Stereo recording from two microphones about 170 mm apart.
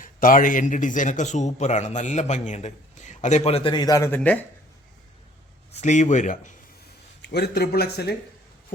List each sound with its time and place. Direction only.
0.0 s a man's voice: 55° left (ahead or behind); by 4.4 s 10° left (ahead or behind)
5.8 s a man's voice: 45° left (ahead or behind)
7.2 s speech: 75° left (ahead or behind)